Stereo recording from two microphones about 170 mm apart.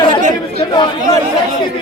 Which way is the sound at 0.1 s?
50° right (ahead or behind).